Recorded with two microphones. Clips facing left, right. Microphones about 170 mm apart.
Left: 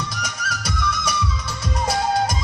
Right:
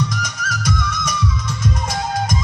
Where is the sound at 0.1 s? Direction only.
30° left (ahead or behind).